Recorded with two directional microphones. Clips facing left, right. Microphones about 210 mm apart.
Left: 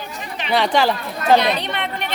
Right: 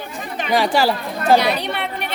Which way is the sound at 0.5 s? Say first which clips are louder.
Even; 10° right (ahead or behind).